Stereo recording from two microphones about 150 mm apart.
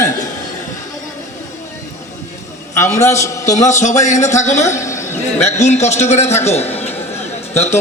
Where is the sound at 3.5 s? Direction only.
50° left (ahead or behind).